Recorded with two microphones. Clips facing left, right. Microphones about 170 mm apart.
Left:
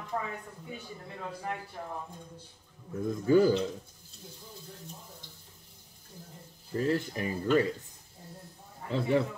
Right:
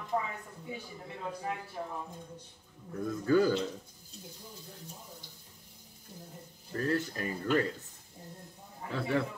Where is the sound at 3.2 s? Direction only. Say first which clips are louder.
Left 3 dB; 20° left (ahead or behind).